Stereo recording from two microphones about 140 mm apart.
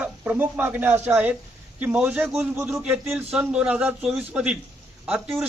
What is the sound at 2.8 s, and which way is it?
A man's voice, 5° right (ahead or behind).